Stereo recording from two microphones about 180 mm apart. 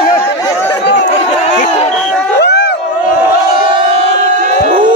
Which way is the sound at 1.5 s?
40° left (ahead or behind).